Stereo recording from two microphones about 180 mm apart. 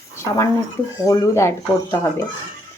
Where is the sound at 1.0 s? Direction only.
15° left (ahead or behind).